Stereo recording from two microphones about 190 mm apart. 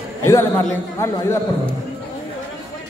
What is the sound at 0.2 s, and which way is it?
A man's voice, 15° left (ahead or behind).